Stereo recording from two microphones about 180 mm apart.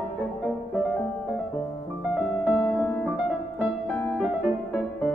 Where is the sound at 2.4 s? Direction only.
Centre (ahead or behind).